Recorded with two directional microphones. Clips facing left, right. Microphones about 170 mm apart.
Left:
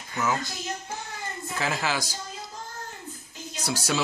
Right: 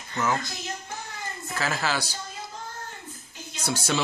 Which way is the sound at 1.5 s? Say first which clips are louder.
Even; 15° left (ahead or behind).